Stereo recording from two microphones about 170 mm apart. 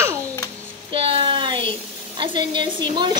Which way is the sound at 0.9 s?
30° right (ahead or behind).